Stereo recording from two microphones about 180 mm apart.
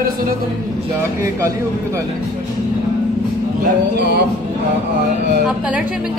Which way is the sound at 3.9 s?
65° right (ahead or behind).